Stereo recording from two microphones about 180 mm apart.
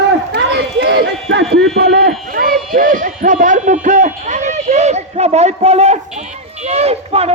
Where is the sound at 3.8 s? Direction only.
45° right (ahead or behind).